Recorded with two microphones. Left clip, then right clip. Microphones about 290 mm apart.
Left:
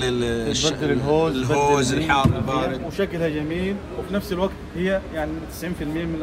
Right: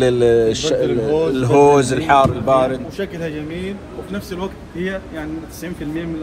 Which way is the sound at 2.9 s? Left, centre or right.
Left.